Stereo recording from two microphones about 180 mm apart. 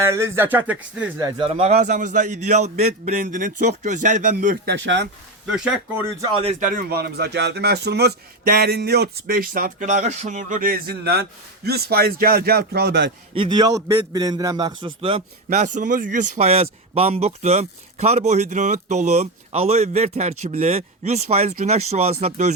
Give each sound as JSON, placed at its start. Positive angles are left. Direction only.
{"t": 0.0, "sound": "speech", "side_deg": -15}
{"t": 1.5, "sound": "speech", "side_deg": -35}
{"t": 4.4, "sound": "speech", "side_deg": -60}
{"t": 5.5, "sound": "speech", "side_deg": -5}
{"t": 6.3, "sound": "speech", "side_deg": -35}
{"t": 13.3, "sound": "a man's voice", "side_deg": -25}
{"t": 15.4, "sound": "speech", "side_deg": -45}